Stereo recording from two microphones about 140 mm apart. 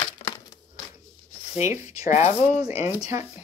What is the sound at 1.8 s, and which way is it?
Speech, 55° left (ahead or behind).